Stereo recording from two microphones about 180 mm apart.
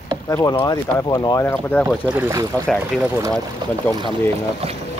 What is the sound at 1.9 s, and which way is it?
Speech, 10° right (ahead or behind).